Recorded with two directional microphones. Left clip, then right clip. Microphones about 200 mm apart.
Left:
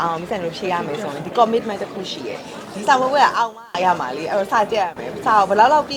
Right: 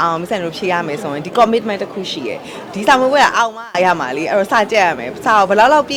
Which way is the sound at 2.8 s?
40° right (ahead or behind).